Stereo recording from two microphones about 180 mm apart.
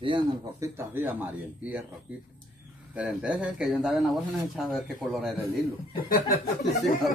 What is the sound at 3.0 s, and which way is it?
Speech, 5° right (ahead or behind).